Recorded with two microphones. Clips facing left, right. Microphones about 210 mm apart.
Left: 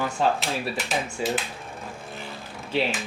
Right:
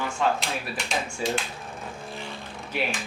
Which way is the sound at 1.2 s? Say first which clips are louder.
Left 1 dB; 15° left (ahead or behind).